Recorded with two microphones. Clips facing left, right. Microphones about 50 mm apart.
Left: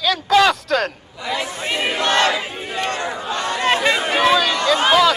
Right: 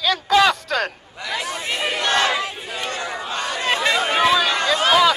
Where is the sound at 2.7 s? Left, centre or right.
Left.